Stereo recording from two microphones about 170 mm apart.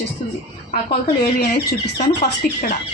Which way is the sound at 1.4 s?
70° left (ahead or behind).